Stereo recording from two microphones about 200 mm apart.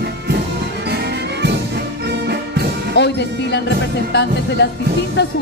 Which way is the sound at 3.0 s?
60° left (ahead or behind).